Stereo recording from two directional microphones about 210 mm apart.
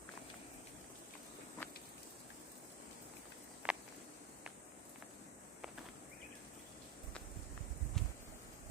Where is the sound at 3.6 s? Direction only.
5° right (ahead or behind).